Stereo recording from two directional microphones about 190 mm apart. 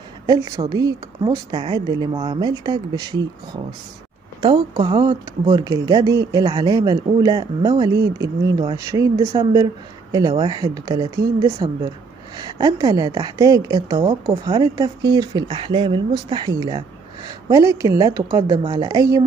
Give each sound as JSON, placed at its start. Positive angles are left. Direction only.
{"t": 0.3, "sound": "speech", "side_deg": -20}
{"t": 4.4, "sound": "a woman's voice", "side_deg": -25}